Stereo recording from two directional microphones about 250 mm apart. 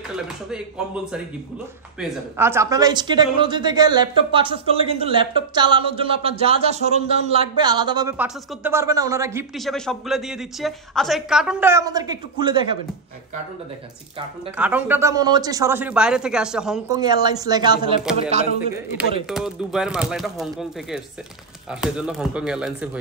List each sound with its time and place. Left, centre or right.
2.0 s a woman's voice: centre
9.6 s speech: centre
14.6 s a woman's voice: centre
16.9 s a woman's voice: centre
19.2 s speech: centre